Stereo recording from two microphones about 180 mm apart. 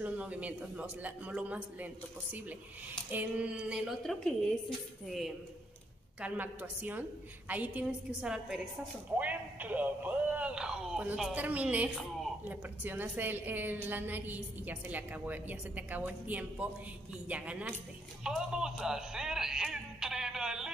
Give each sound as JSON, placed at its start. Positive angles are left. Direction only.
{"t": 0.0, "sound": "a woman's voice", "side_deg": -10}
{"t": 3.1, "sound": "a woman's voice", "side_deg": -10}